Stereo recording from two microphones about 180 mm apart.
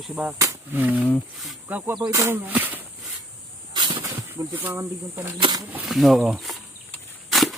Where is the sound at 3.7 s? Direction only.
25° right (ahead or behind).